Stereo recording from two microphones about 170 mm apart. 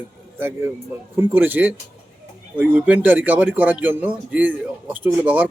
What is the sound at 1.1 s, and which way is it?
A man's voice, 10° right (ahead or behind).